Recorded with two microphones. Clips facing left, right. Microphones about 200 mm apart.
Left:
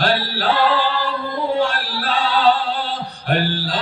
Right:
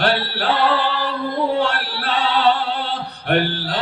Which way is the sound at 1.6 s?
65° right (ahead or behind).